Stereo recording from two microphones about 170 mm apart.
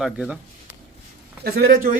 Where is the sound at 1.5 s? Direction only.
65° right (ahead or behind).